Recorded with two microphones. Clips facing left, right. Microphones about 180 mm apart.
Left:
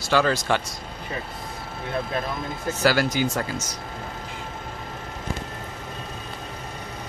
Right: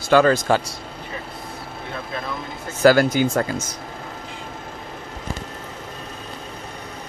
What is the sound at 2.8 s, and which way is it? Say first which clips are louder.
Speech: right 7 dB; 50° right (ahead or behind).